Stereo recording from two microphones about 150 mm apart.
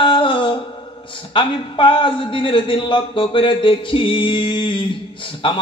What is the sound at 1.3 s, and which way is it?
A man's voice, 35° left (ahead or behind).